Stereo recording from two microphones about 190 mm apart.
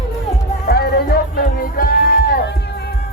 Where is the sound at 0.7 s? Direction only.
55° left (ahead or behind).